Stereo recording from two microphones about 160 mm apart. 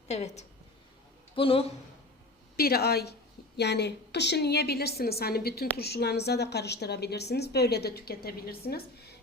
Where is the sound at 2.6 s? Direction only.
75° left (ahead or behind).